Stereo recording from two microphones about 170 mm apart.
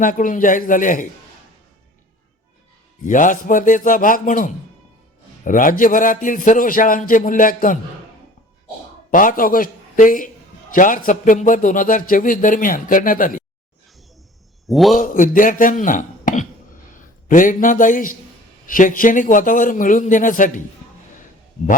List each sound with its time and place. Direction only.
0.0 s a man's voice: 50° left (ahead or behind)
3.0 s a man's voice: 50° left (ahead or behind)
9.0 s a man's voice: 50° left (ahead or behind)
14.7 s a man's voice: centre (ahead or behind)
14.9 s a man's voice: 50° left (ahead or behind)